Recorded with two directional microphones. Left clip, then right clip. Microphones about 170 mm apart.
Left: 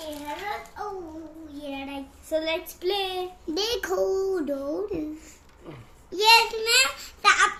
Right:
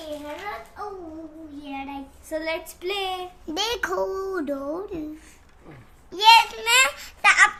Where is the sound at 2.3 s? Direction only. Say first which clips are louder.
Left 1 dB; 50° right (ahead or behind).